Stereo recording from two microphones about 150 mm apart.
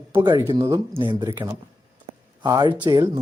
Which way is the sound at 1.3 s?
20° right (ahead or behind).